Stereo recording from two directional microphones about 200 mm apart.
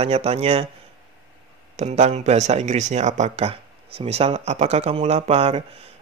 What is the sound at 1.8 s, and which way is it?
A man's voice, 35° right (ahead or behind).